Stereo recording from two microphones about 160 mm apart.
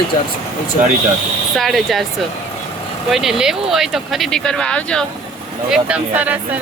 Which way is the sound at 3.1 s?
Centre (ahead or behind).